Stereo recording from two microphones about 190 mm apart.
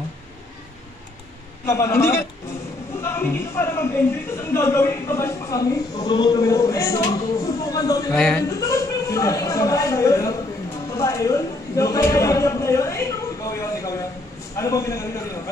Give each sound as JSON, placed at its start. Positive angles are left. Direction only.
{"t": 1.7, "sound": "speech", "side_deg": 15}
{"t": 8.1, "sound": "speech", "side_deg": 5}
{"t": 8.5, "sound": "a sound", "side_deg": 15}
{"t": 14.6, "sound": "speech", "side_deg": 15}